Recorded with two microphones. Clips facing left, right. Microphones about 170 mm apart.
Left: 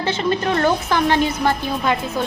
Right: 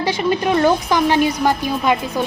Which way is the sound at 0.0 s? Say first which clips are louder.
Right 2 dB; 10° right (ahead or behind).